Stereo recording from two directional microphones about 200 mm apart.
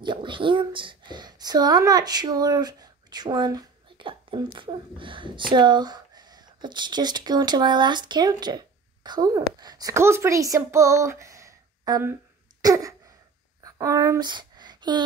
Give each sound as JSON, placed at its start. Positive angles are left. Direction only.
{"t": 0.0, "sound": "speech", "side_deg": -25}
{"t": 12.6, "sound": "throat clearing", "side_deg": -15}
{"t": 13.7, "sound": "speech", "side_deg": -15}